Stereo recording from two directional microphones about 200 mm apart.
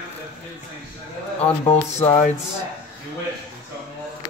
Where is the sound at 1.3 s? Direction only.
30° left (ahead or behind).